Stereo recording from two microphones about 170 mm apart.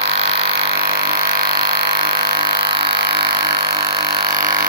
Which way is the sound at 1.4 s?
65° right (ahead or behind).